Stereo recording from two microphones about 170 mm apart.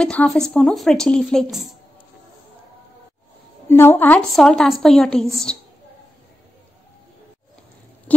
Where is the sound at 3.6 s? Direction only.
15° left (ahead or behind).